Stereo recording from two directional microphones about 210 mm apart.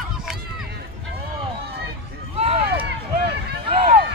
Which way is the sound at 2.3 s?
30° right (ahead or behind).